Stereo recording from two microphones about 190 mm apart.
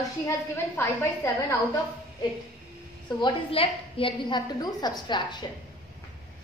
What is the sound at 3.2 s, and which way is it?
A woman's voice, 30° left (ahead or behind).